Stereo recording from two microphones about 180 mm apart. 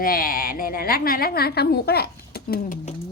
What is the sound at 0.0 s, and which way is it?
A woman's voice, 55° left (ahead or behind).